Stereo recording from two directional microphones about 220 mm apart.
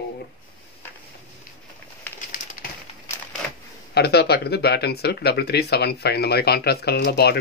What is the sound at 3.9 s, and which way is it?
Speech, 45° left (ahead or behind).